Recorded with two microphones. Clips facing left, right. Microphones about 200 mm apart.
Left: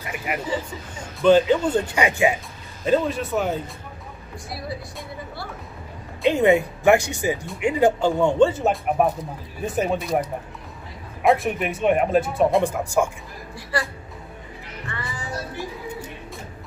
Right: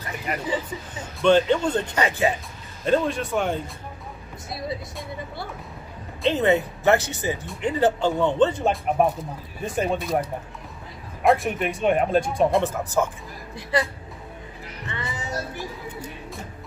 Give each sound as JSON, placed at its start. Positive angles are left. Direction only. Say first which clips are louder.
{"t": 0.3, "sound": "speech", "louder": "even", "side_deg": 10}
{"t": 2.8, "sound": "speech", "louder": "left 1 dB", "side_deg": 0}
{"t": 6.2, "sound": "speech", "louder": "left 3 dB", "side_deg": 15}
{"t": 11.2, "sound": "speech", "louder": "left 1 dB", "side_deg": 0}
{"t": 12.6, "sound": "speech", "louder": "left 2 dB", "side_deg": 10}
{"t": 13.6, "sound": "a woman's voice", "louder": "right 3 dB", "side_deg": -20}
{"t": 14.9, "sound": "music", "louder": "right 1 dB", "side_deg": -20}